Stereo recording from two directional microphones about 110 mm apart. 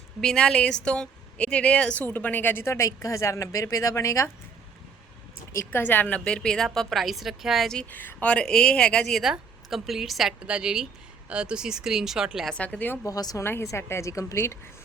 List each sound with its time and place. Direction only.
0.2 s a woman's voice: 5° left (ahead or behind); by 4.3 s 30° left (ahead or behind)
5.5 s a woman's voice: 20° left (ahead or behind); by 12.5 s 5° right (ahead or behind)
12.5 s a woman's voice: 10° left (ahead or behind)
13.1 s a woman's voice: 35° left (ahead or behind)